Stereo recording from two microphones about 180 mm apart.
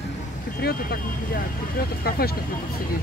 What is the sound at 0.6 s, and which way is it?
Speech, 60° left (ahead or behind).